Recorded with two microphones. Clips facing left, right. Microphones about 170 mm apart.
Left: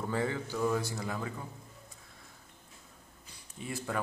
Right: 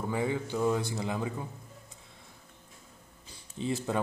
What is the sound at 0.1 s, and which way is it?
A man's voice, 15° right (ahead or behind).